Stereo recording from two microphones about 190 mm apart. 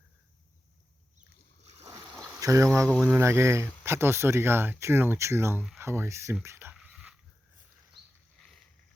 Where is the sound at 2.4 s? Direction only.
15° right (ahead or behind).